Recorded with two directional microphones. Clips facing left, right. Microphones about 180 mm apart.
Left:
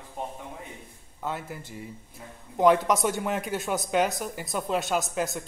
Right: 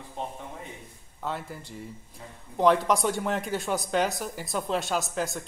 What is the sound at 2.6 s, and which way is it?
Speech, centre (ahead or behind).